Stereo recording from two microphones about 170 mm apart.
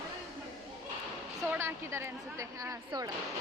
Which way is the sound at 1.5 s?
15° right (ahead or behind).